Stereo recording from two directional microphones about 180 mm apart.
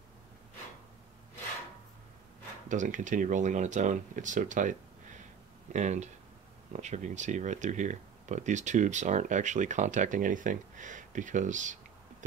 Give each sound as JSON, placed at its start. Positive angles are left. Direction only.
{"t": 2.7, "sound": "speech", "side_deg": -45}